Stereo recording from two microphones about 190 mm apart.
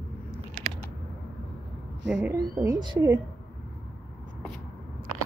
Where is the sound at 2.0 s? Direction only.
70° right (ahead or behind).